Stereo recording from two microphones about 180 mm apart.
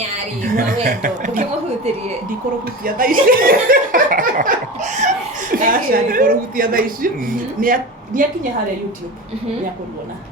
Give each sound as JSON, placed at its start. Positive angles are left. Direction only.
{"t": 0.4, "sound": "a woman's voice", "side_deg": -50}